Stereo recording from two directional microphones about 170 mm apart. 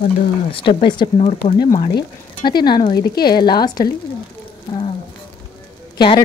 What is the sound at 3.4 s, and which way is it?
Speech, 25° left (ahead or behind).